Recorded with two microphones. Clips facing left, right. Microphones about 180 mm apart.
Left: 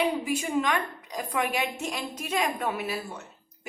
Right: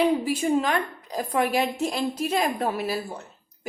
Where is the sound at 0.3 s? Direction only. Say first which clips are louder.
Right 4 dB; 35° right (ahead or behind).